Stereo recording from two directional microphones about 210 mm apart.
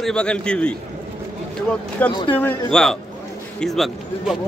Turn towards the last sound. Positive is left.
turn(degrees=0)  # may be behind; listen again after turning